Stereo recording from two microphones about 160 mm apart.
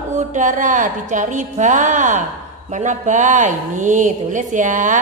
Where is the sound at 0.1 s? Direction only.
50° right (ahead or behind).